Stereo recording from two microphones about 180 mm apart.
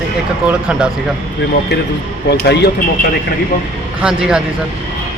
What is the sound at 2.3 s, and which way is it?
Speech, 70° left (ahead or behind).